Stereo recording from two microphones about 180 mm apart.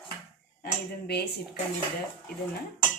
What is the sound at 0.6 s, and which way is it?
Speech, 65° left (ahead or behind).